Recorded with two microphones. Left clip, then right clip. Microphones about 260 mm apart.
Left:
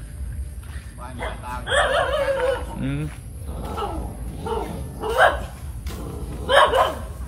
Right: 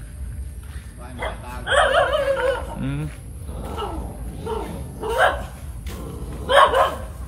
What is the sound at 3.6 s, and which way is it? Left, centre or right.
Roaring cats, centre.